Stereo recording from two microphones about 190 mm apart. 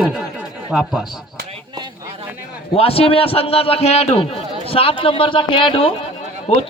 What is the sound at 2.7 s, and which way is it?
A man's voice, 30° left (ahead or behind).